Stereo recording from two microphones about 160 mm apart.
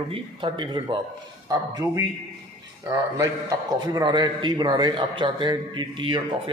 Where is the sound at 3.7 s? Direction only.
25° right (ahead or behind).